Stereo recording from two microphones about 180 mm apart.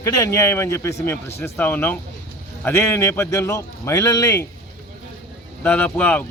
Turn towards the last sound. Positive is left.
turn(degrees=10)  # may be behind; listen again after turning